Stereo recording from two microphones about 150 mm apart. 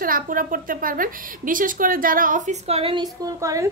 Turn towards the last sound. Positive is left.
turn(degrees=-20)  # may be behind; listen again after turning